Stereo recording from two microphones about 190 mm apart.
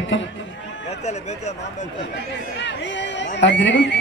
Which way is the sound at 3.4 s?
70° left (ahead or behind).